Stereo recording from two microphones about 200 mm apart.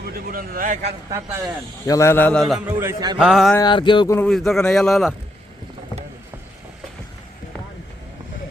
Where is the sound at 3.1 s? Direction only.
Centre (ahead or behind).